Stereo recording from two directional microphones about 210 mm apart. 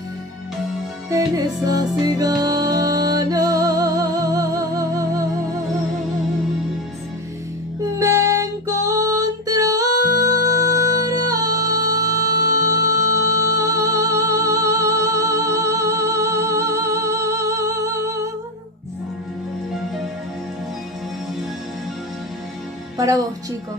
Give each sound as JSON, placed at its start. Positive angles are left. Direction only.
{"t": 1.1, "sound": "music", "side_deg": -15}
{"t": 8.0, "sound": "music", "side_deg": -15}
{"t": 22.9, "sound": "music", "side_deg": -15}